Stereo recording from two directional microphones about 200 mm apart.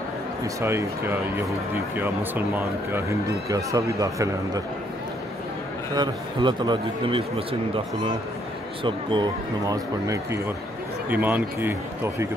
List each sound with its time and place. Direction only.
0.6 s speech: 15° right (ahead or behind)
5.9 s a man's voice: 20° right (ahead or behind)